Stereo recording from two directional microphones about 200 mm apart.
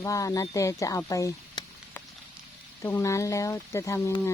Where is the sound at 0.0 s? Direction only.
15° left (ahead or behind).